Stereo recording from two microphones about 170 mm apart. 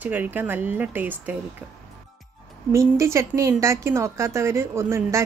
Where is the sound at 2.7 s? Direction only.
15° right (ahead or behind).